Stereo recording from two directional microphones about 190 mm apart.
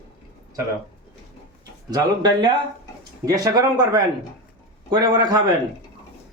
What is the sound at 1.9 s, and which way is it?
Speech, 20° right (ahead or behind).